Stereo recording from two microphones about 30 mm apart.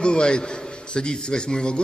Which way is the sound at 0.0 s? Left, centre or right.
Left.